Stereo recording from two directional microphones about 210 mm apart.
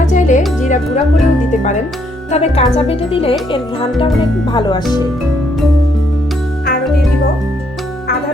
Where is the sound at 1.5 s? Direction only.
35° left (ahead or behind).